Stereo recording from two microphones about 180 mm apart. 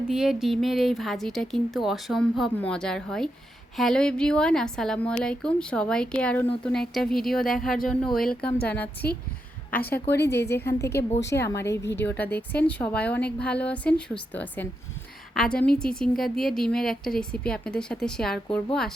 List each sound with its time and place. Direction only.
0.1 s a woman's voice: 5° right (ahead or behind)
10.1 s speech: 65° left (ahead or behind)
10.7 s a woman's voice: 15° left (ahead or behind)